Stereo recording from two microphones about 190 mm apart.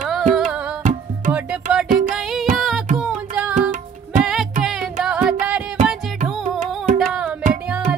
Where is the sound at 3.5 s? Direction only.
40° right (ahead or behind).